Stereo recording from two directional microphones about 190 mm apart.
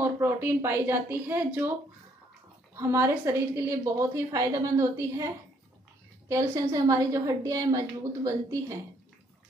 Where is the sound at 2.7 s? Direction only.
15° right (ahead or behind).